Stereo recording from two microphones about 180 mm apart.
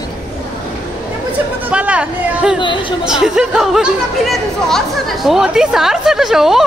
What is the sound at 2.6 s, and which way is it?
Speech, 25° left (ahead or behind).